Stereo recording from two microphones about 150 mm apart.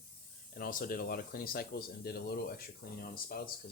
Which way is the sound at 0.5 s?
70° left (ahead or behind).